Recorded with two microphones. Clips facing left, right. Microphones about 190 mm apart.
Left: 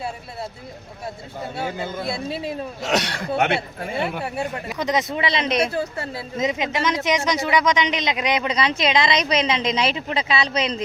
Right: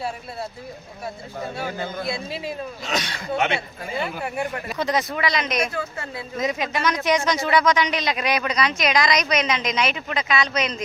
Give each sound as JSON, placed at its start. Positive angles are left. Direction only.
{"t": 1.5, "sound": "speech", "side_deg": 25}
{"t": 2.8, "sound": "speech", "side_deg": 70}
{"t": 4.2, "sound": "speech", "side_deg": 30}
{"t": 4.7, "sound": "speech", "side_deg": 20}